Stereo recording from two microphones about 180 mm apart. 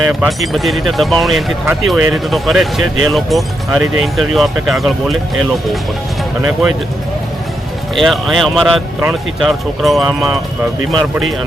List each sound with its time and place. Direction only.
0.0 s speech: 5° right (ahead or behind)
6.4 s speech: 5° right (ahead or behind)
7.9 s speech: centre (ahead or behind)